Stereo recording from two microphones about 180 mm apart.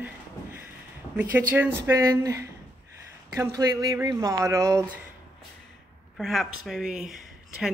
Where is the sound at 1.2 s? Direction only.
10° right (ahead or behind).